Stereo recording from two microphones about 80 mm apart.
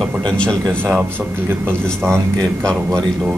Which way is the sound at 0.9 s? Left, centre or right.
Right.